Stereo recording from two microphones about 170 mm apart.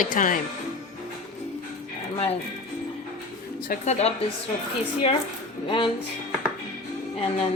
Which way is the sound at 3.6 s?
40° left (ahead or behind).